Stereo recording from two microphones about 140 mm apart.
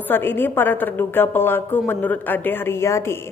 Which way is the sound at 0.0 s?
15° left (ahead or behind).